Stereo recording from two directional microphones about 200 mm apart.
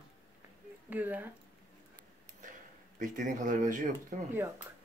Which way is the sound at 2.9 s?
40° right (ahead or behind).